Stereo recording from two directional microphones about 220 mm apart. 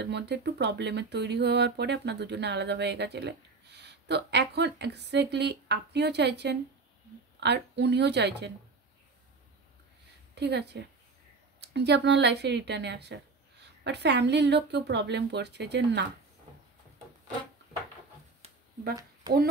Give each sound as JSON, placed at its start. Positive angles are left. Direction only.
{"t": 0.0, "sound": "speech", "side_deg": -50}
{"t": 10.3, "sound": "a woman's voice", "side_deg": -50}